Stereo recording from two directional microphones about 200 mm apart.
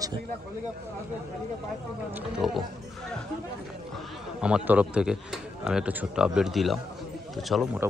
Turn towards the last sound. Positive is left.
turn(degrees=0)  # may be behind; listen again after turning